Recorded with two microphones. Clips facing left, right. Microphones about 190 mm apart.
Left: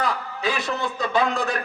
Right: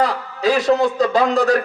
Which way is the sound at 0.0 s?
35° right (ahead or behind).